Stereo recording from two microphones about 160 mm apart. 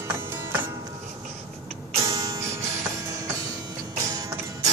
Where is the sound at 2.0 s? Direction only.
20° right (ahead or behind).